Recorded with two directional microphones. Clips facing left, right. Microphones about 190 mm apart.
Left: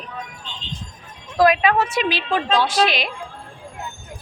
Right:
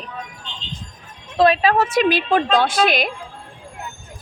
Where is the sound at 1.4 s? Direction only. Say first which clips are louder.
Right 1 dB; 30° right (ahead or behind); by 3.1 s 50° right (ahead or behind).